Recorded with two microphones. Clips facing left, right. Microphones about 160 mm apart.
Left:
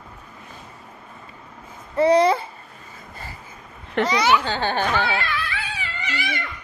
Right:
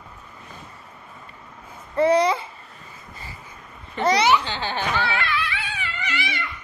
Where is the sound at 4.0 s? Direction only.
80° left.